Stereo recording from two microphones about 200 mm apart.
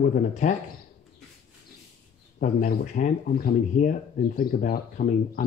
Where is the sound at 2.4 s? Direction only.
40° left (ahead or behind).